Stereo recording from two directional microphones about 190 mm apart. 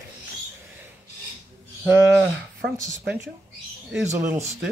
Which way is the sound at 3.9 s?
10° right (ahead or behind).